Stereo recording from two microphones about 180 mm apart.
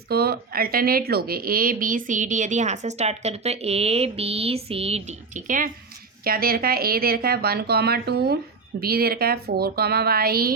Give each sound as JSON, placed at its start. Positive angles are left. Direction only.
{"t": 0.1, "sound": "speech", "side_deg": -60}